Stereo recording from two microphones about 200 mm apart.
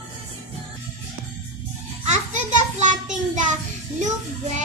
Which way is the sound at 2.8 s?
40° right (ahead or behind).